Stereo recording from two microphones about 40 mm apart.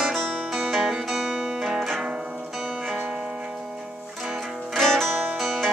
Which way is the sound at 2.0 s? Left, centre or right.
Right.